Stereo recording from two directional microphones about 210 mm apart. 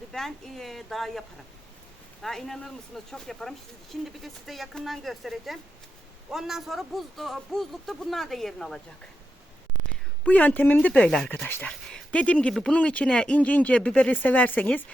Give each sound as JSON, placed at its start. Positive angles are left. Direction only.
{"t": 0.1, "sound": "a man's voice", "side_deg": 0}
{"t": 2.2, "sound": "a man's voice", "side_deg": 0}
{"t": 10.2, "sound": "speech", "side_deg": 5}